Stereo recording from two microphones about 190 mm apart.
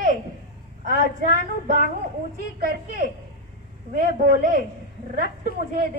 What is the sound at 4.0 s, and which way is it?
Speech, 45° right (ahead or behind).